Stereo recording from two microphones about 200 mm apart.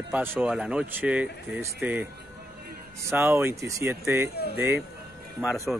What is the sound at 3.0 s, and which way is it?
A man's voice, 10° right (ahead or behind).